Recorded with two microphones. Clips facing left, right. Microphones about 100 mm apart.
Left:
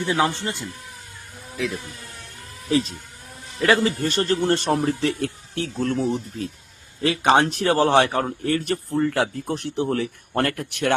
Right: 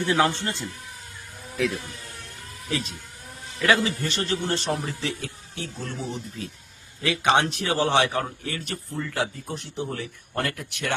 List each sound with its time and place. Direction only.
0.0 s a man's voice: 15° left (ahead or behind)
1.5 s speech: centre (ahead or behind)
2.6 s a man's voice: 30° left (ahead or behind); by 6.1 s 60° left (ahead or behind)
7.0 s a man's voice: 40° left (ahead or behind); by 10.9 s 55° left (ahead or behind)